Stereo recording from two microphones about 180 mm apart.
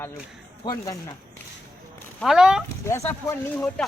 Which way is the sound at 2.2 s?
5° right (ahead or behind).